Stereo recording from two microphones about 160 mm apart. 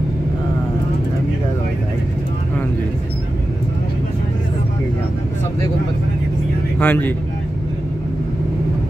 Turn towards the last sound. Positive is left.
turn(degrees=10)  # may be behind; listen again after turning